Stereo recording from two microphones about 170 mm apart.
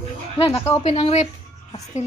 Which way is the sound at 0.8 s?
35° left (ahead or behind).